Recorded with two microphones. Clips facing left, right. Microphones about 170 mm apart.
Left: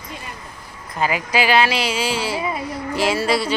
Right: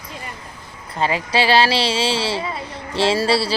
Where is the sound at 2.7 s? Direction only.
30° right (ahead or behind).